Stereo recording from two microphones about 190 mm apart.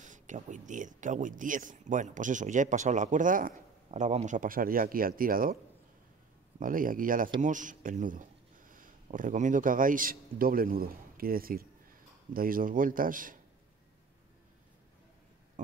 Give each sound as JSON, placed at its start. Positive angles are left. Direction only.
{"t": 0.0, "sound": "speech", "side_deg": -40}
{"t": 6.6, "sound": "speech", "side_deg": -45}